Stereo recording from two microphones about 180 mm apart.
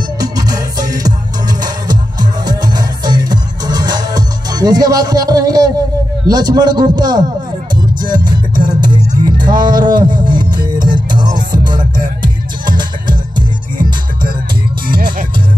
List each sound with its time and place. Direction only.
0.2 s music: 20° right (ahead or behind)
6.2 s a man's voice: 20° right (ahead or behind)
7.7 s music: 25° right (ahead or behind)